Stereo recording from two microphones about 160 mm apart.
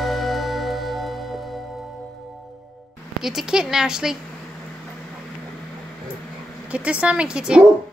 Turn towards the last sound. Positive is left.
turn(degrees=-5)  # may be behind; listen again after turning